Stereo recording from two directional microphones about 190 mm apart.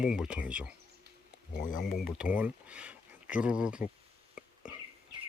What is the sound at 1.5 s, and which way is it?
Speech, 45° left (ahead or behind).